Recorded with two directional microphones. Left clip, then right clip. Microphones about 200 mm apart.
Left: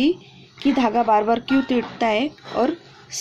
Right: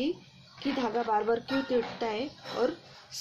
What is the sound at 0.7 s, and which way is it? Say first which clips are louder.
A woman's voice: left 11 dB; 40° left (ahead or behind).